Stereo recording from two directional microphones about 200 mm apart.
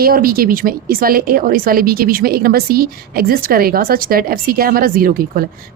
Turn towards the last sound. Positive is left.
turn(degrees=-45)  # may be behind; listen again after turning